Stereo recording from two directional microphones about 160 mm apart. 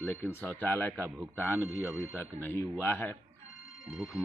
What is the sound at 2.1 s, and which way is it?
A man's voice, 15° left (ahead or behind).